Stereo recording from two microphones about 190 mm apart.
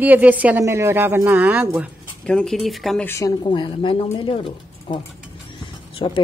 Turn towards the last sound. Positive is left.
turn(degrees=30)  # may be behind; listen again after turning